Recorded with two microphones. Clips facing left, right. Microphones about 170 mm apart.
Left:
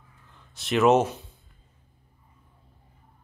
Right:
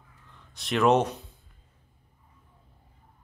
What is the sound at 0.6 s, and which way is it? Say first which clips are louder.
Speech: left 2 dB; 5° left (ahead or behind).